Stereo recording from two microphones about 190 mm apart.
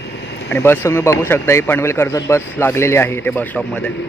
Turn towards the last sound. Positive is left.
turn(degrees=10)  # may be behind; listen again after turning